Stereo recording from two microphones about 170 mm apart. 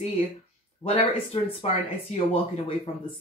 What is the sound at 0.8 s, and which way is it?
Speech, 35° left (ahead or behind).